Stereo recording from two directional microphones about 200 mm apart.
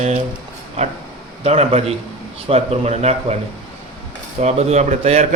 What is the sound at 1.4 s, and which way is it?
A man's voice, 30° right (ahead or behind).